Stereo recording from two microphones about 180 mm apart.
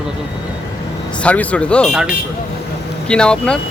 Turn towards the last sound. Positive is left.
turn(degrees=5)  # may be behind; listen again after turning